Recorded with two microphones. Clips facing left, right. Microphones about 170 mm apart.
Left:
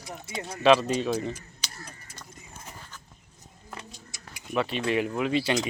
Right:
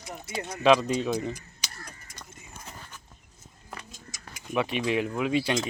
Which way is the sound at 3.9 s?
45° right (ahead or behind).